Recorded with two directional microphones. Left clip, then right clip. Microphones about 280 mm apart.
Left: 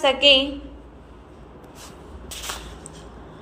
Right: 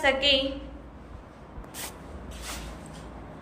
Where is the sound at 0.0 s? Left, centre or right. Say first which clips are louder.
Left 7 dB; centre.